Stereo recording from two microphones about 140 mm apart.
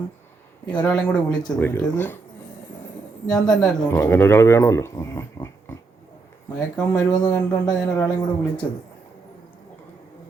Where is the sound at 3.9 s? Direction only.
15° left (ahead or behind).